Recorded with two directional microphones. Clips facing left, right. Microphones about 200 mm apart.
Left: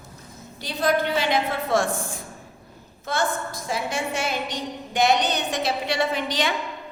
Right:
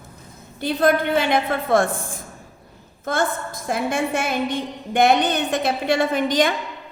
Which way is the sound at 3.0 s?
50° right (ahead or behind).